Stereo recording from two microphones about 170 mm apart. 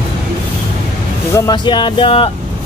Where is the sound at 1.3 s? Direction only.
25° left (ahead or behind).